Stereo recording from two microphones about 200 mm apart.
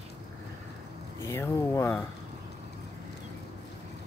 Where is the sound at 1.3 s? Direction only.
15° left (ahead or behind).